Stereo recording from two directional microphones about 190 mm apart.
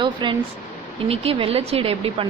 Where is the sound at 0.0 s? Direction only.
25° right (ahead or behind).